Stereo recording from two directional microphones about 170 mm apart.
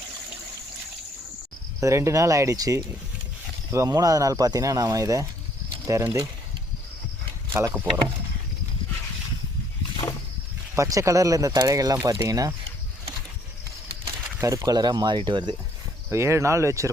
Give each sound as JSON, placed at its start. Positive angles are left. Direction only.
{"t": 1.8, "sound": "speech", "side_deg": -15}
{"t": 7.5, "sound": "speech", "side_deg": -10}
{"t": 10.0, "sound": "wild animals", "side_deg": 15}
{"t": 10.8, "sound": "speech", "side_deg": -20}
{"t": 14.4, "sound": "speech", "side_deg": -20}
{"t": 16.0, "sound": "speech", "side_deg": -15}